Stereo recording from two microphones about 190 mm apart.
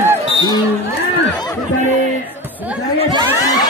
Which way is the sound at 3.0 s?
25° right (ahead or behind).